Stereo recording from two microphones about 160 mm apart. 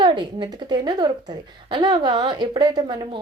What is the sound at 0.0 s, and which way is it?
A woman's voice, 30° right (ahead or behind).